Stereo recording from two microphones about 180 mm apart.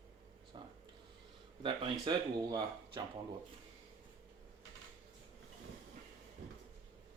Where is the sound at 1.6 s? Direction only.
25° right (ahead or behind).